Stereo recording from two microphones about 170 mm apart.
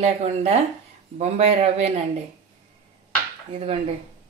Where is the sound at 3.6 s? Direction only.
35° right (ahead or behind).